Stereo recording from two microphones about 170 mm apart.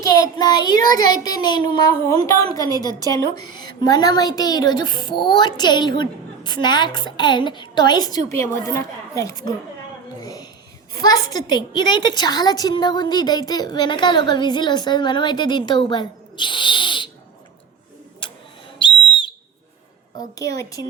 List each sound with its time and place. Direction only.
0.0 s a woman's voice: 20° left (ahead or behind)
10.2 s a sound: 20° left (ahead or behind)
10.9 s a woman's voice: 20° left (ahead or behind)
18.2 s printer: 30° left (ahead or behind)
18.8 s whistle: 30° left (ahead or behind)
20.1 s a woman's voice: 20° left (ahead or behind)